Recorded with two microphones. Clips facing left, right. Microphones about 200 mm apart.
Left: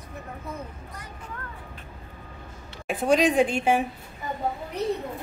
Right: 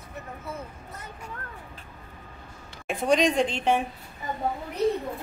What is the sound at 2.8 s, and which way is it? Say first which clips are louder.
A woman's voice: left 1 dB; centre (ahead or behind).